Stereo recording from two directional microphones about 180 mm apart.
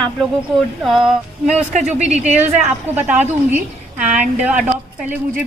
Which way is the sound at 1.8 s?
40° right (ahead or behind).